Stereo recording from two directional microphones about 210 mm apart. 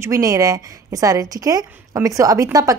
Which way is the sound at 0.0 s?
15° right (ahead or behind).